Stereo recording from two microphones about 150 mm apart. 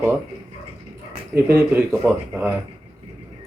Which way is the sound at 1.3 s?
15° right (ahead or behind).